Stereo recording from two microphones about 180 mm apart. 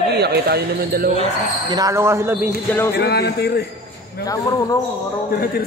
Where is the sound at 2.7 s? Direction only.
10° left (ahead or behind).